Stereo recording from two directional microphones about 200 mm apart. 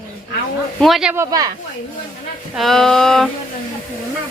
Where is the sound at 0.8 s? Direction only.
Centre (ahead or behind).